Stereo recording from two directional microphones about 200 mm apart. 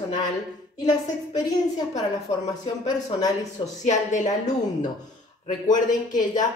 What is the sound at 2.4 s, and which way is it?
Speech, 20° left (ahead or behind).